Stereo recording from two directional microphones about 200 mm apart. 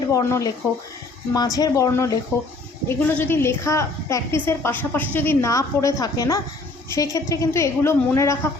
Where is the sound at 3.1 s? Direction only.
10° left (ahead or behind).